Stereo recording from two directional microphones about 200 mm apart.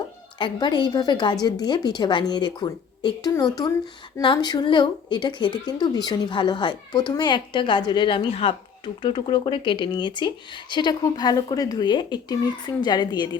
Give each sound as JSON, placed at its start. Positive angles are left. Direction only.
{"t": 0.3, "sound": "speech", "side_deg": 25}